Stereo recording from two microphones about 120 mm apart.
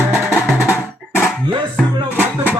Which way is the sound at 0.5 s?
20° left (ahead or behind).